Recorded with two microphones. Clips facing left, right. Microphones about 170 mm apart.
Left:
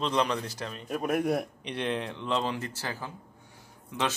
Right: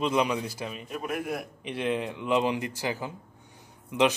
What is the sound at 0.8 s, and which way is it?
Speech, 40° left (ahead or behind).